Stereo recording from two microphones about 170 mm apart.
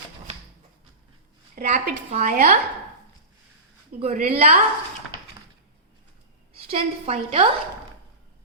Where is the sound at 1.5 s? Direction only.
40° right (ahead or behind).